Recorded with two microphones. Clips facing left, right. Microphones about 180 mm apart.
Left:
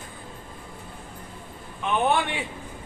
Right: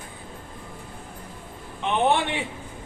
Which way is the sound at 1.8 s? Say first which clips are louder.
Right 1 dB; 25° right (ahead or behind).